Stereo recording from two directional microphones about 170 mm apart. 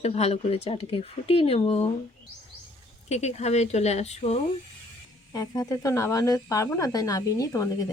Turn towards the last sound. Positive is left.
turn(degrees=20)  # may be behind; listen again after turning